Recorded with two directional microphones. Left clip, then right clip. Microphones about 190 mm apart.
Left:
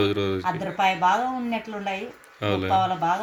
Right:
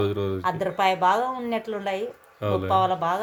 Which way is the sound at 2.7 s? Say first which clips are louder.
Even; 25° right (ahead or behind).